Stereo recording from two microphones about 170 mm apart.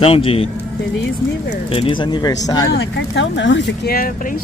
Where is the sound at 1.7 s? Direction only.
30° left (ahead or behind).